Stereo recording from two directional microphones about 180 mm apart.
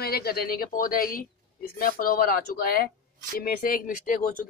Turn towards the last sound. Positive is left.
turn(degrees=50)  # may be behind; listen again after turning